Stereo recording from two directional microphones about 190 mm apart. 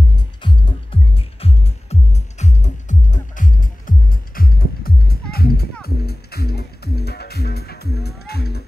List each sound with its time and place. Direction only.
0.1 s music: 25° left (ahead or behind); by 8.6 s 55° left (ahead or behind)